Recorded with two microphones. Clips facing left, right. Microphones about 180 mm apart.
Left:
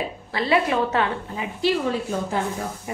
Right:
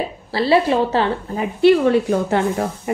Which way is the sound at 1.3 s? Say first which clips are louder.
Right 13 dB; 55° right (ahead or behind).